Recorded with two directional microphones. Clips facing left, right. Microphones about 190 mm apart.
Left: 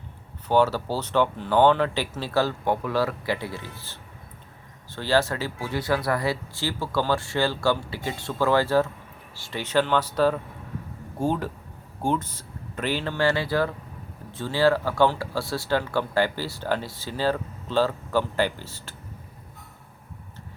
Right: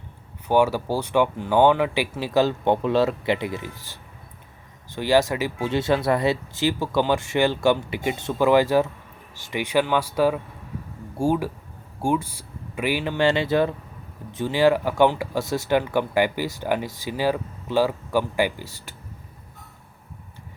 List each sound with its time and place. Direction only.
0.4 s speech: 15° right (ahead or behind)